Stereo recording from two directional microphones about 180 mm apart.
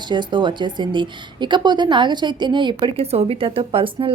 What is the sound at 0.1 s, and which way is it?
Speech, 25° right (ahead or behind).